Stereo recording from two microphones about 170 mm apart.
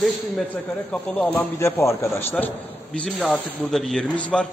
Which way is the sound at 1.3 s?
15° left (ahead or behind).